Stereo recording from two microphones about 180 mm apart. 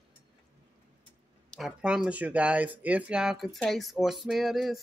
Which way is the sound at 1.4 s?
Centre (ahead or behind).